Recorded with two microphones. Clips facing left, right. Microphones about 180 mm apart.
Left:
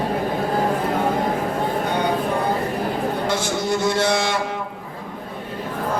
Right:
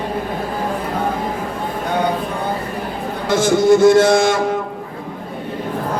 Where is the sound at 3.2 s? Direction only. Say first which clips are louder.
Right 9 dB; 50° right (ahead or behind).